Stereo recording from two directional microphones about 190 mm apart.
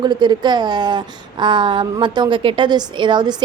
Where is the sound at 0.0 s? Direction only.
25° right (ahead or behind).